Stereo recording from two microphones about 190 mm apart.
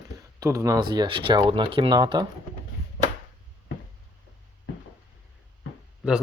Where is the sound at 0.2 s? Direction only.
15° right (ahead or behind).